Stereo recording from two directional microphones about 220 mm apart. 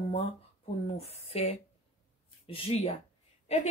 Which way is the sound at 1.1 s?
30° left (ahead or behind).